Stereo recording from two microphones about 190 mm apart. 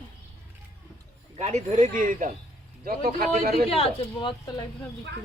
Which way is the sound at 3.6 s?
30° left (ahead or behind).